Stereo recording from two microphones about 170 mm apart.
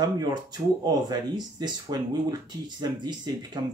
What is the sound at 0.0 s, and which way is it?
Speech, 25° right (ahead or behind).